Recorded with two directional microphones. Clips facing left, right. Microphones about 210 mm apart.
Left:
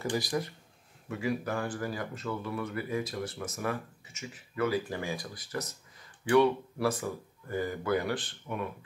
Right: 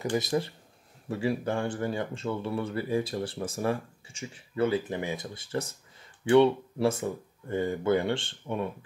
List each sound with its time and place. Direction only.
0.1 s speech: 25° right (ahead or behind)